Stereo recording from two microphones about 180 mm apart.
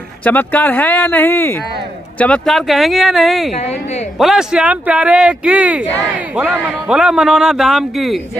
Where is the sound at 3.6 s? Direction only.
35° left (ahead or behind).